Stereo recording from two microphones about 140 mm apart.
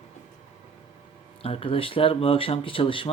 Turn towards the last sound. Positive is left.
turn(degrees=40)  # may be behind; listen again after turning